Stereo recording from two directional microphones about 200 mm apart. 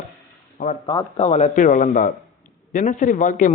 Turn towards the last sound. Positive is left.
turn(degrees=40)  # may be behind; listen again after turning